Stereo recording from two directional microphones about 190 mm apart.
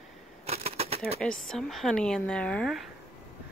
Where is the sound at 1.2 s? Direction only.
5° left (ahead or behind).